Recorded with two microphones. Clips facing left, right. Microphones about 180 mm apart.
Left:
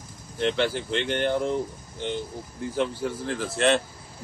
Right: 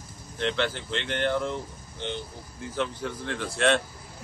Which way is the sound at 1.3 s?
40° left (ahead or behind).